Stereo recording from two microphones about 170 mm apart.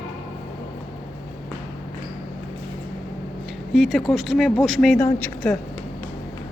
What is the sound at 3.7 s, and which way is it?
A woman's voice, centre (ahead or behind).